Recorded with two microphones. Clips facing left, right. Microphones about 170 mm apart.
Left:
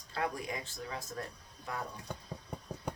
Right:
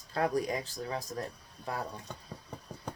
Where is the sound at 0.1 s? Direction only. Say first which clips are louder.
Right 6 dB; 40° right (ahead or behind).